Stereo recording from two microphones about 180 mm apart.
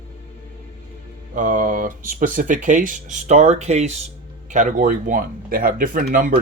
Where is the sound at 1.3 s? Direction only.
45° right (ahead or behind).